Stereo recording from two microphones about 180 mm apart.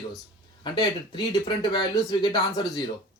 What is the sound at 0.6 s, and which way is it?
Speech, 25° left (ahead or behind).